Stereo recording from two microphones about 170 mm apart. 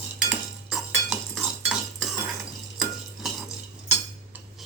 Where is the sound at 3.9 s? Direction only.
10° right (ahead or behind).